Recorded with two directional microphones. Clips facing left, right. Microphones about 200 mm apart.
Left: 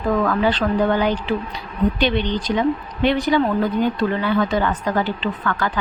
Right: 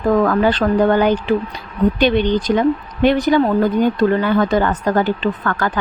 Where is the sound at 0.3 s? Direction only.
45° right (ahead or behind).